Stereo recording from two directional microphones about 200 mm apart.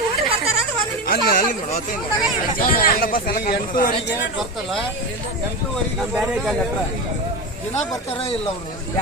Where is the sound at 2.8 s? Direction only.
45° left (ahead or behind).